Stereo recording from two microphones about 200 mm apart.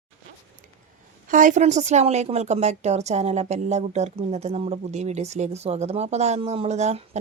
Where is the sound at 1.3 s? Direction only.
40° right (ahead or behind).